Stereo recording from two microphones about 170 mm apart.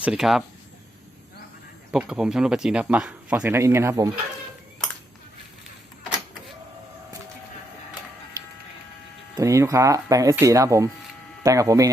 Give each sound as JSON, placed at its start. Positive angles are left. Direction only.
{"t": 0.0, "sound": "speech", "side_deg": -5}
{"t": 1.9, "sound": "speech", "side_deg": -5}
{"t": 9.3, "sound": "speech", "side_deg": -20}